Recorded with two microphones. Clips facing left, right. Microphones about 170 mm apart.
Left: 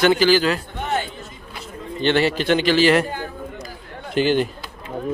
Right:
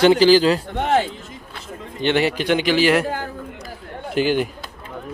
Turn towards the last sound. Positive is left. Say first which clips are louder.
# left 1 dB
turn(degrees=-10)  # may be behind; listen again after turning